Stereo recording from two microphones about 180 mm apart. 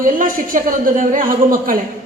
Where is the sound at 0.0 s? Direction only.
50° right (ahead or behind).